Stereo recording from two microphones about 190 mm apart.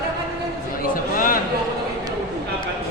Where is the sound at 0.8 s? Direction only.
45° left (ahead or behind).